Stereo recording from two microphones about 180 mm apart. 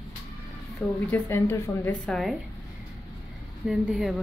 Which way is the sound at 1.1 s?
15° left (ahead or behind).